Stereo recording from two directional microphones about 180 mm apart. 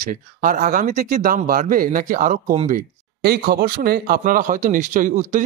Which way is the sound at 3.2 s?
60° right (ahead or behind).